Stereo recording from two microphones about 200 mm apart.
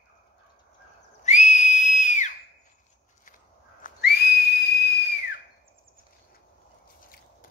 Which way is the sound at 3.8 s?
50° left (ahead or behind).